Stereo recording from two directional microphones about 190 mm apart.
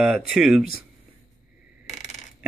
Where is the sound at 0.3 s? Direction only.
Centre (ahead or behind).